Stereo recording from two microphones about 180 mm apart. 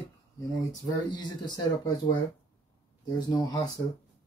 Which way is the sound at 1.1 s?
25° left (ahead or behind).